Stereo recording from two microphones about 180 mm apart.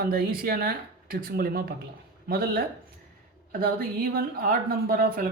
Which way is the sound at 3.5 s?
55° right (ahead or behind).